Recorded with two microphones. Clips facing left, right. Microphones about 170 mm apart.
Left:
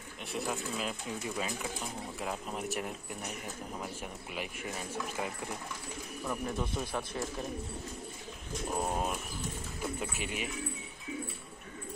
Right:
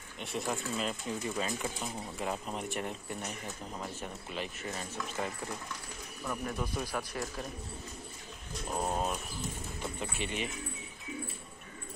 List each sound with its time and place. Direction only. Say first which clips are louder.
0.2 s speech: right 1 dB; centre (ahead or behind)
6.4 s speech: right 1 dB; 25° left (ahead or behind)
8.7 s speech: right 1 dB; 5° left (ahead or behind)